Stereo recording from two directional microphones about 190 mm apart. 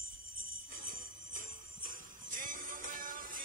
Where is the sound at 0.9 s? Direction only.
50° right (ahead or behind).